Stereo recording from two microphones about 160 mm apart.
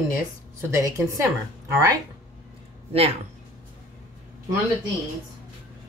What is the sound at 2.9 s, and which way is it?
Speech, 40° right (ahead or behind).